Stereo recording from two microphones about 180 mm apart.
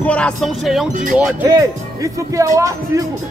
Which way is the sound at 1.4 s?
20° right (ahead or behind).